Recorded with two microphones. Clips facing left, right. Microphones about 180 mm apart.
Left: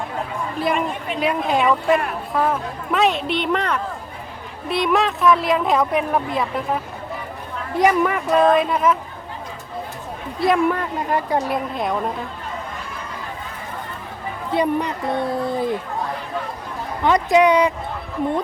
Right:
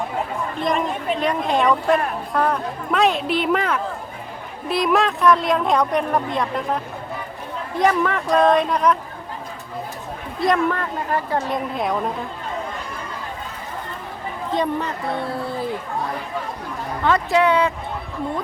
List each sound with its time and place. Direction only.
1.2 s a woman's voice: 5° left (ahead or behind)
10.4 s a woman's voice: 10° left (ahead or behind)
11.7 s a woman's voice: centre (ahead or behind)
14.5 s a woman's voice: 10° left (ahead or behind)
17.0 s a woman's voice: 15° left (ahead or behind)